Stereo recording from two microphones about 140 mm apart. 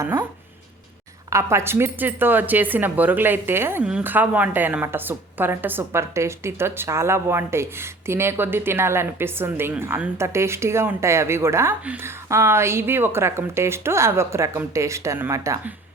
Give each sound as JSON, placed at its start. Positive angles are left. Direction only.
{"t": 0.0, "sound": "speech", "side_deg": -20}
{"t": 1.3, "sound": "a woman's voice", "side_deg": -20}